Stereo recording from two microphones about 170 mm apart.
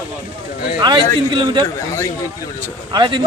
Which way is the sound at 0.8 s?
30° right (ahead or behind).